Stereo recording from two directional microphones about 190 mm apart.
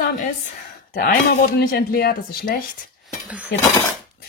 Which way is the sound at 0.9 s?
55° left (ahead or behind).